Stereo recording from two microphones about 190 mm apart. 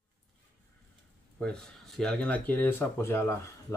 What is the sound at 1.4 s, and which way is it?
Speech, 5° left (ahead or behind).